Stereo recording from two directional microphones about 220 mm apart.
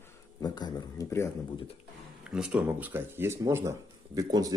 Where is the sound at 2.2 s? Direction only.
5° right (ahead or behind).